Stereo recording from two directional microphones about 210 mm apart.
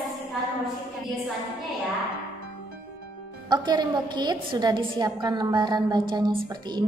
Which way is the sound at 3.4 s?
20° right (ahead or behind).